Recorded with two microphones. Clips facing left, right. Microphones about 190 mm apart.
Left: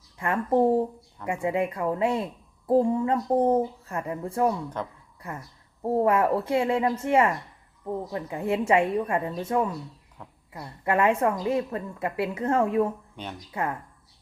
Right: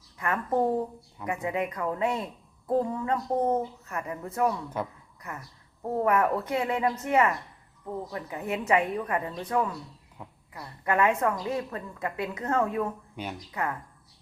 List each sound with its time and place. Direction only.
0.2 s a woman's voice: 25° left (ahead or behind)
5.8 s a woman's voice: 30° left (ahead or behind)
10.2 s a sound: 10° right (ahead or behind)
10.5 s a woman's voice: 25° left (ahead or behind)